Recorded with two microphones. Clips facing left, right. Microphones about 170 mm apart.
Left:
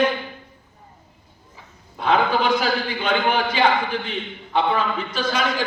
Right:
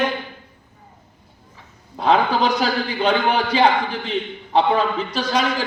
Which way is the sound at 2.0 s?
35° right (ahead or behind).